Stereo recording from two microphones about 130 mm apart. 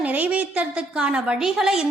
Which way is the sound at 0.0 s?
10° right (ahead or behind).